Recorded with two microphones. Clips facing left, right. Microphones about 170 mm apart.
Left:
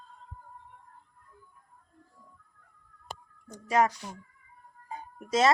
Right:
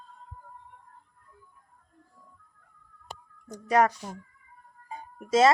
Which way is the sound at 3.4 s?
40° right (ahead or behind).